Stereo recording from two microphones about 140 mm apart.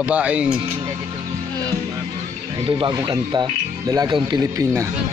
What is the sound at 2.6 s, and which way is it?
Speech, 35° right (ahead or behind).